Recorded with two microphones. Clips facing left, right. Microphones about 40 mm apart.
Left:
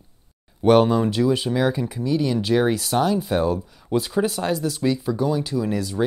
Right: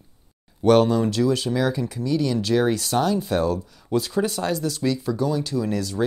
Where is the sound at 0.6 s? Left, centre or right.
Centre.